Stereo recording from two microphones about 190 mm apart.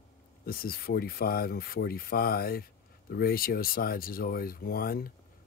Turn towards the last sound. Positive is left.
turn(degrees=50)  # may be behind; listen again after turning